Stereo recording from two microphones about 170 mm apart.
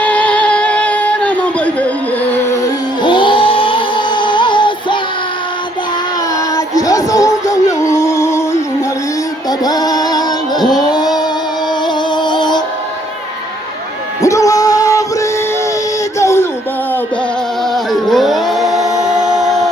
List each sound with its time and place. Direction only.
0.0 s music: 10° left (ahead or behind)
3.0 s music: 30° left (ahead or behind)
6.7 s music: 20° left (ahead or behind)
9.5 s music: 20° left (ahead or behind)
10.8 s a sound: 25° left (ahead or behind)
12.1 s music: 25° left (ahead or behind)
14.2 s music: 20° left (ahead or behind)
16.1 s a sound: 15° left (ahead or behind)
17.9 s a sound: centre (ahead or behind)